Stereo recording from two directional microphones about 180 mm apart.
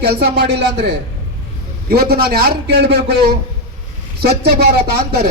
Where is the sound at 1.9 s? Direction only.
60° right (ahead or behind).